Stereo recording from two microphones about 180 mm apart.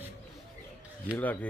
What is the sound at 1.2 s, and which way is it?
Speech, 10° left (ahead or behind).